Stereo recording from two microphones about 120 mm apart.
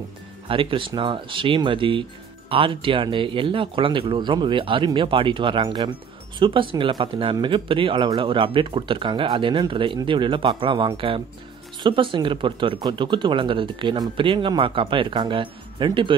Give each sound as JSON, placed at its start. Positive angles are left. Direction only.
{"t": 0.5, "sound": "speech", "side_deg": -45}